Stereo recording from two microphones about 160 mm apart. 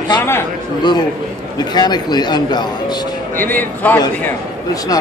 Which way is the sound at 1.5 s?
25° left (ahead or behind).